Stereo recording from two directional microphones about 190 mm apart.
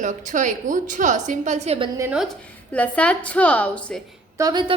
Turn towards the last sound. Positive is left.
turn(degrees=-25)  # may be behind; listen again after turning